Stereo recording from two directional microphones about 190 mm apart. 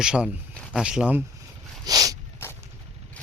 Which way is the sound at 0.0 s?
5° right (ahead or behind).